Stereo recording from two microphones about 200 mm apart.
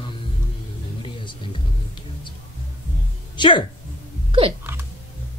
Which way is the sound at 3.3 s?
25° left (ahead or behind).